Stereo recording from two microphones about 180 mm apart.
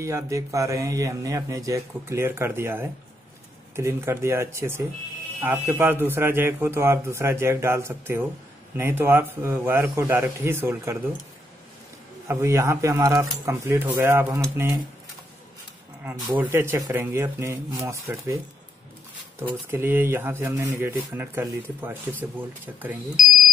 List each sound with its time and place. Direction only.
0.0 s a man's voice: 15° right (ahead or behind)
12.3 s a man's voice: 15° right (ahead or behind)
16.3 s a man's voice: 10° right (ahead or behind)
19.7 s a man's voice: 10° right (ahead or behind)